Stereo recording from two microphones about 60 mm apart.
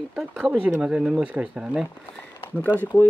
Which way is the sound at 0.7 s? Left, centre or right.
Centre.